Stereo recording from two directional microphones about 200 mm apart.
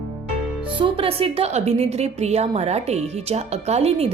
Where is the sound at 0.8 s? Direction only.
25° right (ahead or behind).